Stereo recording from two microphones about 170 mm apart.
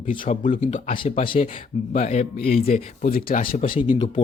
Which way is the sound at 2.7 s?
55° left (ahead or behind).